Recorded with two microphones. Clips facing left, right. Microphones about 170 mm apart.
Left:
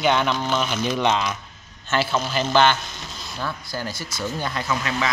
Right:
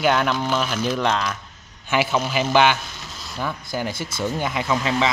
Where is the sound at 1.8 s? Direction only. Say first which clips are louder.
Right 2 dB; 15° right (ahead or behind).